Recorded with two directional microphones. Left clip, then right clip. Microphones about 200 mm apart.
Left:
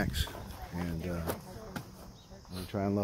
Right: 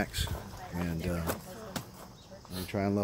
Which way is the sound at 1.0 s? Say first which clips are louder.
Right 4 dB; 20° right (ahead or behind).